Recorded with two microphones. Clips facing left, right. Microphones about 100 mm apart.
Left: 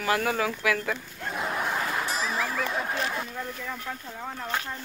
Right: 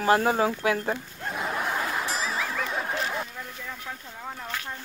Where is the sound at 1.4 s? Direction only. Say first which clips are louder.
Even; centre (ahead or behind).